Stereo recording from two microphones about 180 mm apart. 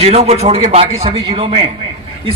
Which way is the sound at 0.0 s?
35° right (ahead or behind).